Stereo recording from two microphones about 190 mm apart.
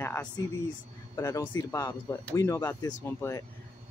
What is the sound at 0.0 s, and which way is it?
Speech, 10° left (ahead or behind).